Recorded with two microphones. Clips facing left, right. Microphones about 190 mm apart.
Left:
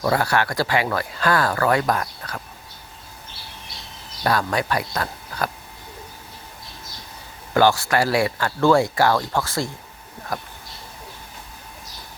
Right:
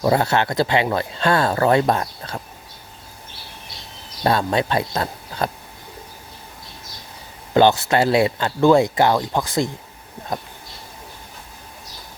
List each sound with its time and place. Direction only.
0.0 s speech: 25° right (ahead or behind)
4.2 s speech: 25° right (ahead or behind)
7.5 s speech: 20° right (ahead or behind)